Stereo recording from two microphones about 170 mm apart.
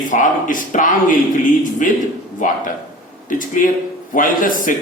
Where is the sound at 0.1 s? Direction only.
50° left (ahead or behind).